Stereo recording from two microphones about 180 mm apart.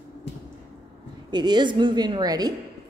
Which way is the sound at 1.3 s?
25° right (ahead or behind).